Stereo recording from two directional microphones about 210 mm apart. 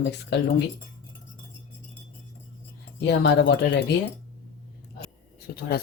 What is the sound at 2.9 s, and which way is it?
Speech, 55° left (ahead or behind).